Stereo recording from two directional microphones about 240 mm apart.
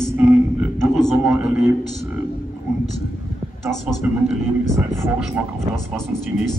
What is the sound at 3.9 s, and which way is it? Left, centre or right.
A man's voice, centre.